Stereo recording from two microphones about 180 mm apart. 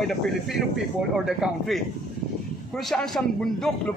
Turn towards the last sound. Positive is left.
turn(degrees=5)  # may be behind; listen again after turning